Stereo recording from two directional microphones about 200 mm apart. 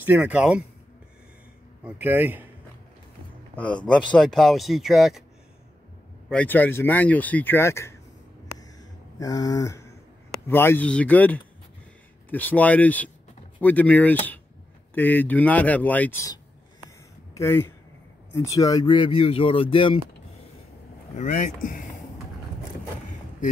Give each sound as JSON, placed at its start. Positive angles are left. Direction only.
{"t": 0.0, "sound": "speech", "side_deg": -10}
{"t": 1.9, "sound": "speech", "side_deg": -10}
{"t": 3.5, "sound": "speech", "side_deg": 5}
{"t": 6.2, "sound": "speech", "side_deg": 5}
{"t": 9.2, "sound": "speech", "side_deg": 20}
{"t": 17.4, "sound": "speech", "side_deg": 10}
{"t": 21.2, "sound": "speech", "side_deg": 40}